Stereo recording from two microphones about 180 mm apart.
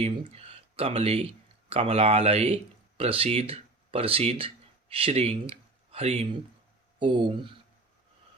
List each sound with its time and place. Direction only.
0.0 s speech: 35° right (ahead or behind)